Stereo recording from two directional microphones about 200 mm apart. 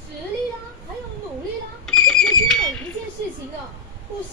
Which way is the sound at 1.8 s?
5° left (ahead or behind).